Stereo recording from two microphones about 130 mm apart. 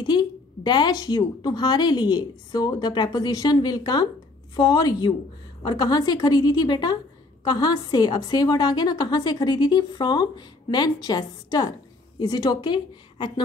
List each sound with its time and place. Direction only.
0.0 s a woman's voice: 35° left (ahead or behind)